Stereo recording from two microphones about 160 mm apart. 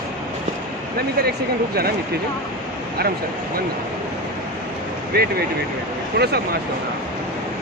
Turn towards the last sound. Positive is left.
turn(degrees=-90)